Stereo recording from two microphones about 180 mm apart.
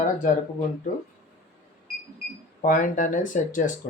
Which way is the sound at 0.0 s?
45° left (ahead or behind).